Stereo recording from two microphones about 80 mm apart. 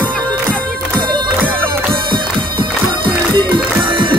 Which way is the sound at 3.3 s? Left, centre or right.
Right.